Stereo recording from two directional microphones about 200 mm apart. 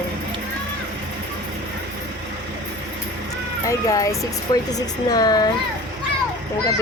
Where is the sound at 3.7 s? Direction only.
15° left (ahead or behind).